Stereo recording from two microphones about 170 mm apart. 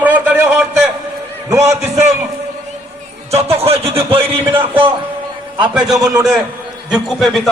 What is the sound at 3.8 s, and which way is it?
Speech, 35° right (ahead or behind).